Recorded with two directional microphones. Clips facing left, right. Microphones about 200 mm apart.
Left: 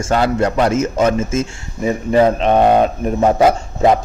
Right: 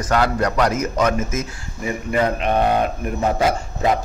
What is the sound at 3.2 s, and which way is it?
Speech, 50° left (ahead or behind).